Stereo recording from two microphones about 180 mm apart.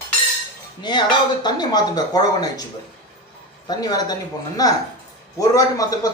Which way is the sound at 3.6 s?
20° left (ahead or behind).